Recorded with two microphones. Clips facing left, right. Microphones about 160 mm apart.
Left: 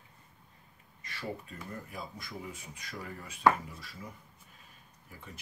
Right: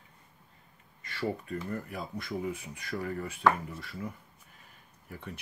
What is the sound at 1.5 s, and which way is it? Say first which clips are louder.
Speech: right 8 dB; 60° right (ahead or behind).